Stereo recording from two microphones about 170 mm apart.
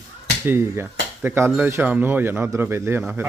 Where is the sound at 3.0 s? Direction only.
5° right (ahead or behind).